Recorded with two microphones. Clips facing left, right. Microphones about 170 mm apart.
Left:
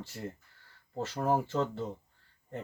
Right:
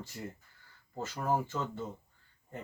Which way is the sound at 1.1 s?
30° left (ahead or behind).